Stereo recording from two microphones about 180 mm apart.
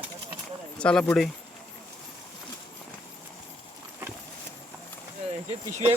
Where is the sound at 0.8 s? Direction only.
5° left (ahead or behind).